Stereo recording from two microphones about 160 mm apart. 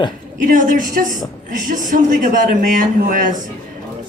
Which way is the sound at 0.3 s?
55° right (ahead or behind).